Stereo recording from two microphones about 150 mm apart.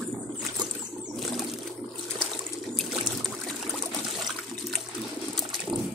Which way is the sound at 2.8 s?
Centre (ahead or behind).